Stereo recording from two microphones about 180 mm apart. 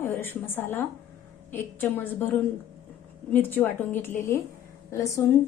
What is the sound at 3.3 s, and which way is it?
A woman's voice, 10° left (ahead or behind).